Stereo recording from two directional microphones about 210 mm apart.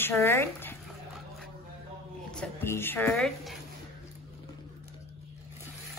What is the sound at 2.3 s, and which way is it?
Speech, 10° left (ahead or behind).